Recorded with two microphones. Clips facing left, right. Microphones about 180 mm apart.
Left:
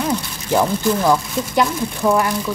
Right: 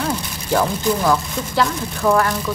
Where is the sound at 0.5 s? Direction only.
15° left (ahead or behind).